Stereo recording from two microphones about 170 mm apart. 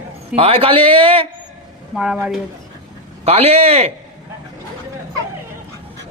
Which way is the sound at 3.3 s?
35° right (ahead or behind).